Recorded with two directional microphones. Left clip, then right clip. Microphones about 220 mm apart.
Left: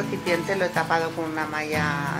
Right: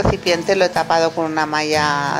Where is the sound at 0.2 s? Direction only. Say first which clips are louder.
Right 4 dB; 30° right (ahead or behind).